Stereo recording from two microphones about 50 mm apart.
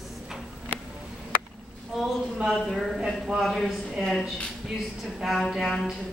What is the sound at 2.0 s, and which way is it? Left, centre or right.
A woman's voice, centre.